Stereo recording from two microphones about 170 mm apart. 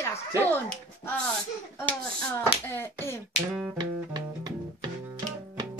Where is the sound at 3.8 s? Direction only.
25° right (ahead or behind).